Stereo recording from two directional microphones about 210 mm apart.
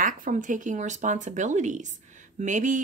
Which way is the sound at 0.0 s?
40° right (ahead or behind).